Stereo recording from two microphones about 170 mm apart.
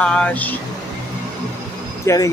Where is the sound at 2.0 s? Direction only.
20° left (ahead or behind).